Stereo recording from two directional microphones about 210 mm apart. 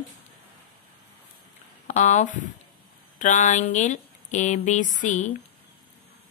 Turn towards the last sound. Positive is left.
turn(degrees=35)  # may be behind; listen again after turning